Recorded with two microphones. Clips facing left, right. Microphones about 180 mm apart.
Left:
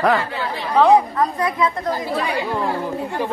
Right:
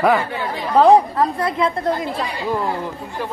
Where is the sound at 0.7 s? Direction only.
30° right (ahead or behind).